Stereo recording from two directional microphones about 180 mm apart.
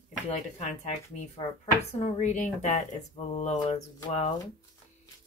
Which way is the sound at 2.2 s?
40° left (ahead or behind).